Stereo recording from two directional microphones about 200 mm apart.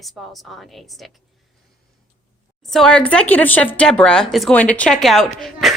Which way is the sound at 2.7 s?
5° left (ahead or behind).